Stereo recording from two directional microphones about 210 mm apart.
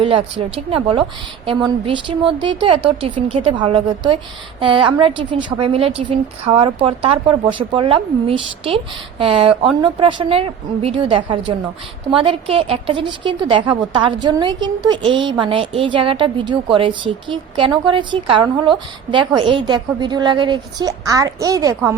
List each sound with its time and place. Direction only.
0.0 s a woman's voice: 25° right (ahead or behind)